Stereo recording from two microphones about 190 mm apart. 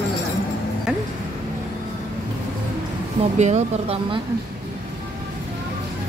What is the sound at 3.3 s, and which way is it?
Speech, 35° right (ahead or behind).